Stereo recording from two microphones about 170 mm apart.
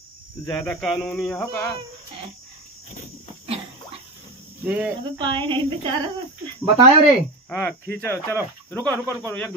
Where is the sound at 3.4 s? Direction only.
35° right (ahead or behind).